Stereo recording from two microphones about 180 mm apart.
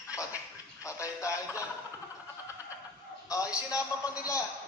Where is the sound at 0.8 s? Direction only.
15° left (ahead or behind).